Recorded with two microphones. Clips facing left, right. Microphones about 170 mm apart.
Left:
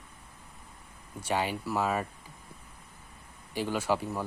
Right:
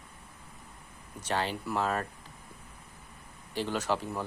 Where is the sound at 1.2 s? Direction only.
10° left (ahead or behind).